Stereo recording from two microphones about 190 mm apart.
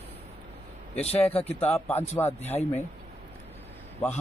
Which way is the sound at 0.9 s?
35° left (ahead or behind).